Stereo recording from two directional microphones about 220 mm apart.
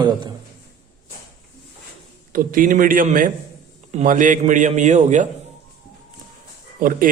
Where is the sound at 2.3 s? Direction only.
40° right (ahead or behind).